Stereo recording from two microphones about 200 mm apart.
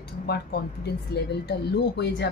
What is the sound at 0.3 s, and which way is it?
Speech, 55° left (ahead or behind).